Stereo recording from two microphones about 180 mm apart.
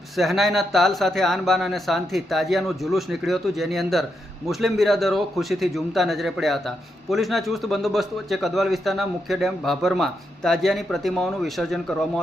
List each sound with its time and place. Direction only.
0.2 s a man's voice: centre (ahead or behind)